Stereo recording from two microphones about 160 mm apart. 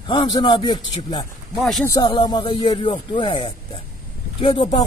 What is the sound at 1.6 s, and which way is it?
Speech, centre (ahead or behind).